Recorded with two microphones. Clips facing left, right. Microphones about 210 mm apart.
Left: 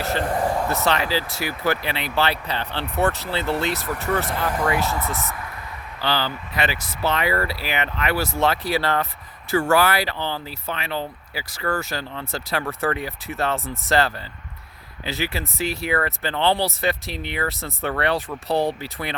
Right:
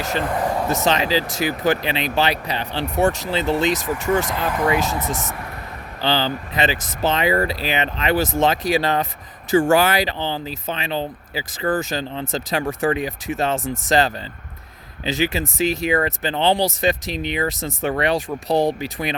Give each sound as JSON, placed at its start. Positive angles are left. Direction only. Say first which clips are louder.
{"t": 0.0, "sound": "speech", "louder": "even", "side_deg": -15}